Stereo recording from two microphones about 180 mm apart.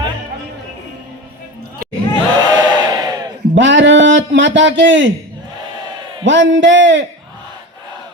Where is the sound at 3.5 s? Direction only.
90° right.